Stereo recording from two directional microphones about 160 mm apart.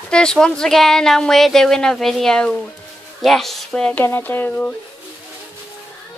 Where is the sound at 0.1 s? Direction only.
5° left (ahead or behind).